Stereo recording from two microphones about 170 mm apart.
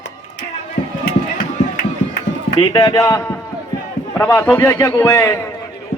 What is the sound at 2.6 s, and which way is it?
A man's voice, 25° left (ahead or behind).